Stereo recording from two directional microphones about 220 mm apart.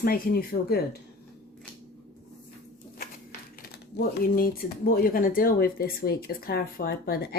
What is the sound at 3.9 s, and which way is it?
A woman's voice, 40° left (ahead or behind).